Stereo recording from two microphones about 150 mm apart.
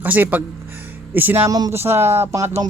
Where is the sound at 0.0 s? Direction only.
10° right (ahead or behind).